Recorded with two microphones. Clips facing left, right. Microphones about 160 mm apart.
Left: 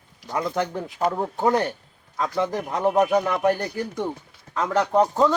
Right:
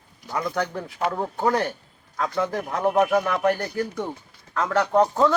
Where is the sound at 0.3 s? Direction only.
20° left (ahead or behind).